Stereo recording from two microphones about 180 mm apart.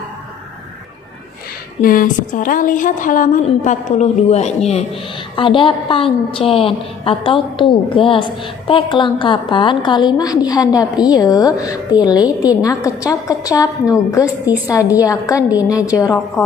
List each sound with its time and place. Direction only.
1.8 s a woman's voice: 50° left (ahead or behind); by 16.1 s 20° left (ahead or behind)